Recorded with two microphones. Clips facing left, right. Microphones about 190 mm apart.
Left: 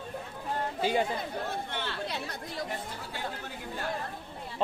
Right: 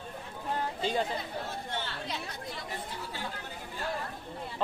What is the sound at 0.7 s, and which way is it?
Speech, 10° left (ahead or behind).